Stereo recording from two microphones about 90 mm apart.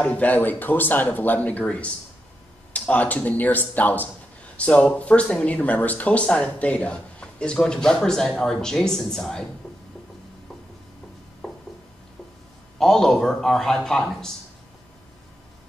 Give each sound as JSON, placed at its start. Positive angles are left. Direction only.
{"t": 0.0, "sound": "speech", "side_deg": 15}
{"t": 12.7, "sound": "a man's voice", "side_deg": 5}